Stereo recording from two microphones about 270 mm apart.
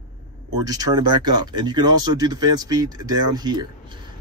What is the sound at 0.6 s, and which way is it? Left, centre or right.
Speech, centre.